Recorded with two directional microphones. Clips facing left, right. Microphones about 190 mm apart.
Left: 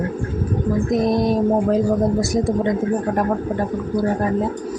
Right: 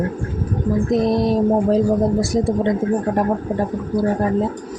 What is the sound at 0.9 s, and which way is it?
Speech, 30° right (ahead or behind).